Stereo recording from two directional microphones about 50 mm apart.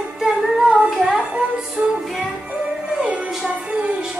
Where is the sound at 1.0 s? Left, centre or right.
Right.